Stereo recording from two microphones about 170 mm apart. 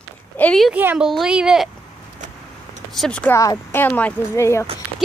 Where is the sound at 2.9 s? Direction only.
5° left (ahead or behind).